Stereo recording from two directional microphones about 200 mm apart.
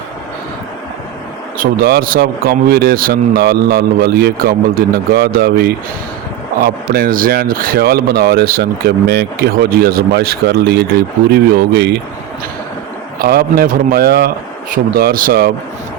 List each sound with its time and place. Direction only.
1.5 s speech: 50° right (ahead or behind)
13.1 s speech: 50° right (ahead or behind)